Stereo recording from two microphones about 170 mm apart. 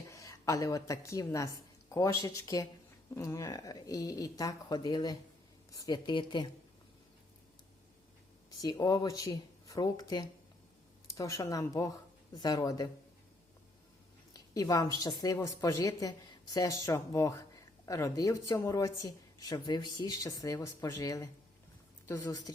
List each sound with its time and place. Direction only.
0.1 s a woman's voice: 20° left (ahead or behind)
8.4 s speech: 20° left (ahead or behind)
14.3 s speech: 20° left (ahead or behind)